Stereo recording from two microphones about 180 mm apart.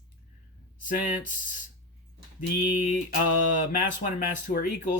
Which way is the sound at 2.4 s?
45° left (ahead or behind).